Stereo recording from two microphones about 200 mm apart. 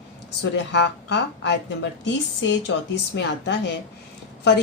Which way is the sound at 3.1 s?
55° left (ahead or behind).